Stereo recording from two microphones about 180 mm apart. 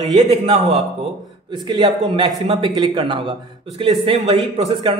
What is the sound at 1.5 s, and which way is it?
A man's voice, 25° right (ahead or behind).